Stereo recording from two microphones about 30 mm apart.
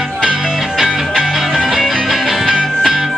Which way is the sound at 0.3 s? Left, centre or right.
Centre.